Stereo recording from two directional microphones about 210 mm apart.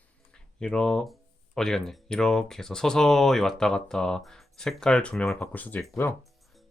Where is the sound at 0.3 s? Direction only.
5° left (ahead or behind).